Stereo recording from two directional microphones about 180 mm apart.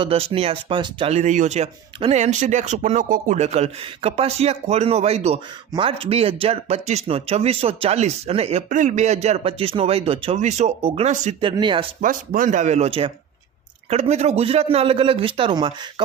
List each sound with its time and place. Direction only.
0.0 s speech: 30° right (ahead or behind)
11.9 s speech: 50° right (ahead or behind); by 15.9 s 25° right (ahead or behind)